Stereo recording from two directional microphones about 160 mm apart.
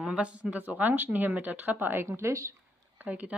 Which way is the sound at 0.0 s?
5° right (ahead or behind).